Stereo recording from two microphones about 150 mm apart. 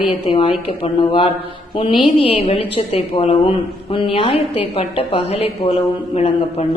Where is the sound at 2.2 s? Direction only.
40° left (ahead or behind).